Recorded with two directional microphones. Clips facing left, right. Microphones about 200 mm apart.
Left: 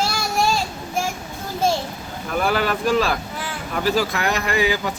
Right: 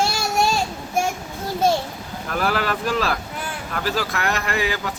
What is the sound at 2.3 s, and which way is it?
Speech, centre (ahead or behind).